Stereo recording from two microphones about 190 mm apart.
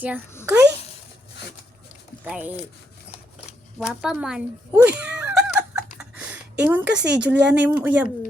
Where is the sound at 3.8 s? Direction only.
5° right (ahead or behind).